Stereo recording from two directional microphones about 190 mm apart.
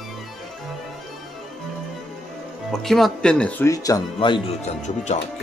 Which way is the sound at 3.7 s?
20° left (ahead or behind).